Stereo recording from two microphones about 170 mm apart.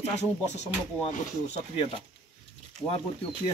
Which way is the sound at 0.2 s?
40° left (ahead or behind).